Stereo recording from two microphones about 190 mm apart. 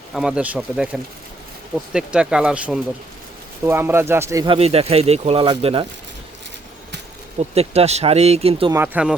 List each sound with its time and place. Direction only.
0.1 s speech: 5° right (ahead or behind)
1.9 s speech: 5° right (ahead or behind)
4.4 s speech: 30° right (ahead or behind)
7.5 s speech: 30° right (ahead or behind)
8.7 s speech: 10° right (ahead or behind)